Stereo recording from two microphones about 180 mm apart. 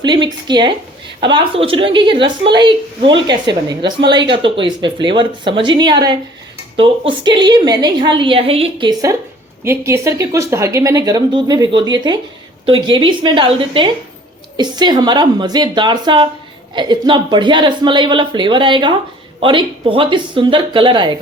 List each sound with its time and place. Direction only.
0.0 s a woman's voice: 25° right (ahead or behind)